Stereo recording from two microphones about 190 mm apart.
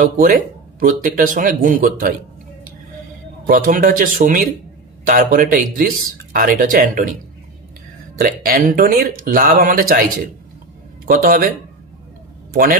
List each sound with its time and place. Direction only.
0.0 s speech: 50° right (ahead or behind)
3.4 s speech: 45° right (ahead or behind)
8.2 s speech: 50° right (ahead or behind)